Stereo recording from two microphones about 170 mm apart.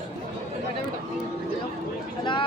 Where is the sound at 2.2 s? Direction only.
30° left (ahead or behind).